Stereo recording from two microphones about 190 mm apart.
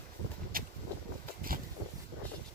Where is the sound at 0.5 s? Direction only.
50° right (ahead or behind).